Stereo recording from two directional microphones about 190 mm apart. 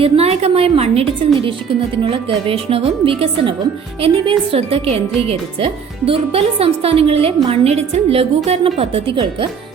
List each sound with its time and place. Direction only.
0.0 s a woman's voice: 35° right (ahead or behind)